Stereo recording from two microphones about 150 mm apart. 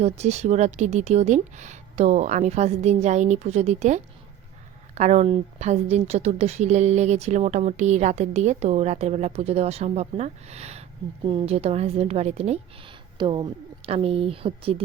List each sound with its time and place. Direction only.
0.0 s a woman's voice: 45° right (ahead or behind)